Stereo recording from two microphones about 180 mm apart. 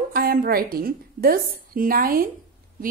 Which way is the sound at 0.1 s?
55° right (ahead or behind).